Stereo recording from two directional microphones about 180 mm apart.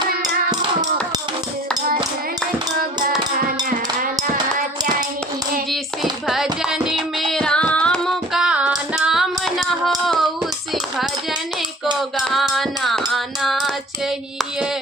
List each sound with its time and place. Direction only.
0.2 s hands: 20° right (ahead or behind)
3.7 s hands: 50° right (ahead or behind)
6.2 s music: centre (ahead or behind)
10.9 s clapping: centre (ahead or behind)
11.9 s music: centre (ahead or behind)